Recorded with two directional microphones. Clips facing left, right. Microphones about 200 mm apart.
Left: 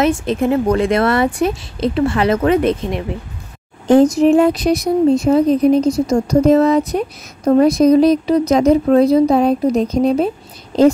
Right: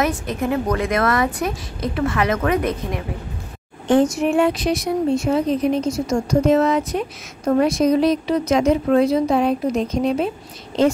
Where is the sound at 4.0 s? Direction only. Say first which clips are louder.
Left 6 dB; 35° left (ahead or behind).